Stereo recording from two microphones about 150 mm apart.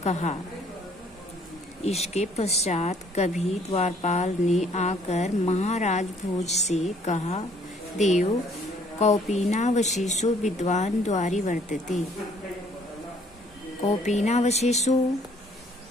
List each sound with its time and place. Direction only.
0.0 s speech: 50° left (ahead or behind)
1.8 s speech: 45° left (ahead or behind)
14.0 s speech: 50° left (ahead or behind)